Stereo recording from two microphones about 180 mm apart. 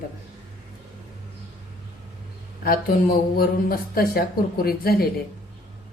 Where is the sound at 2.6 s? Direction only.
55° left (ahead or behind).